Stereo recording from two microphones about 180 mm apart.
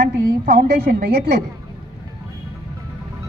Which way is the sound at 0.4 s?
60° right (ahead or behind).